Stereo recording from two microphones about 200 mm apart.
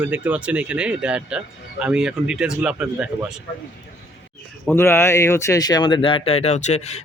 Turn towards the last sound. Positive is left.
turn(degrees=35)  # may be behind; listen again after turning